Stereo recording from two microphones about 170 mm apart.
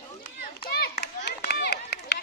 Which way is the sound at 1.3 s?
75° left (ahead or behind).